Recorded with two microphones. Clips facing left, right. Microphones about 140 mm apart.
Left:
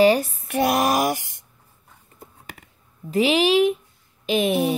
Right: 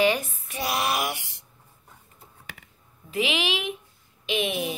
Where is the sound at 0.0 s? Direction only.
35° left (ahead or behind).